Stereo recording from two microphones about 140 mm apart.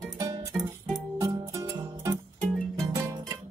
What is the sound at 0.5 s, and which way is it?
Music, centre (ahead or behind).